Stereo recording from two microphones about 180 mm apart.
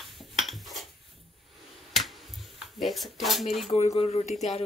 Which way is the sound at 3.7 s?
35° left (ahead or behind).